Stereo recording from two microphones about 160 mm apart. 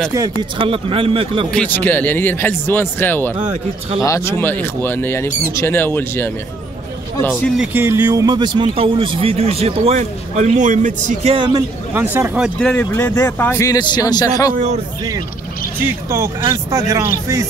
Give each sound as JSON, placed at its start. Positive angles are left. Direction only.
{"t": 0.1, "sound": "a man's voice", "side_deg": -25}
{"t": 1.5, "sound": "speech", "side_deg": 10}
{"t": 7.5, "sound": "speech", "side_deg": -5}
{"t": 7.8, "sound": "a man's voice", "side_deg": -15}
{"t": 11.3, "sound": "speech", "side_deg": -30}
{"t": 11.9, "sound": "speech", "side_deg": -15}
{"t": 12.4, "sound": "speech", "side_deg": 5}
{"t": 12.9, "sound": "speech", "side_deg": 15}
{"t": 14.5, "sound": "speech", "side_deg": -50}
{"t": 15.8, "sound": "speech", "side_deg": -15}